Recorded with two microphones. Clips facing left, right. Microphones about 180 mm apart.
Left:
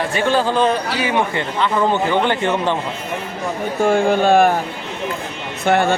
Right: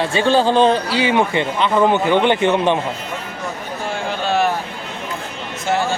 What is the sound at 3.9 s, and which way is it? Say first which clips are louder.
Speech: left 8 dB; 50° left (ahead or behind).